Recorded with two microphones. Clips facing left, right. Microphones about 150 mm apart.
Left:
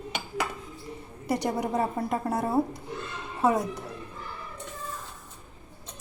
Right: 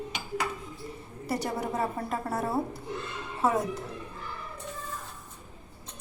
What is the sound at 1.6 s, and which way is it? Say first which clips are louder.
A woman's voice: left 3 dB; 15° left (ahead or behind).